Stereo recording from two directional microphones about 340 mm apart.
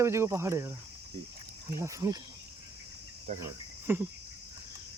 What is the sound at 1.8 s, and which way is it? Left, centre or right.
Speech, centre.